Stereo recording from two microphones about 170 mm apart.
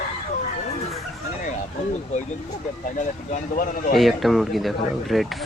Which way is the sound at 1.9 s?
45° left (ahead or behind).